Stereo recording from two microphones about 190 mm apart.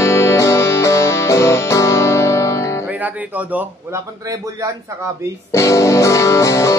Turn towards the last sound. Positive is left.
turn(degrees=15)  # may be behind; listen again after turning